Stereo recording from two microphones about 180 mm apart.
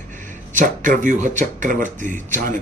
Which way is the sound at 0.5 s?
45° right (ahead or behind).